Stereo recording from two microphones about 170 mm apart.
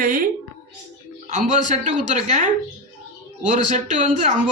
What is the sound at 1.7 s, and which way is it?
Speech, 45° right (ahead or behind).